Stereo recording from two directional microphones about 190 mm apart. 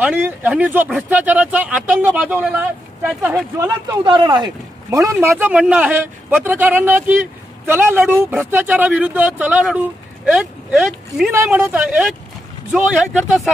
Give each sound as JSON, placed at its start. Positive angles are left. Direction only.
{"t": 0.0, "sound": "a man's voice", "side_deg": -10}
{"t": 3.5, "sound": "a man's voice", "side_deg": -20}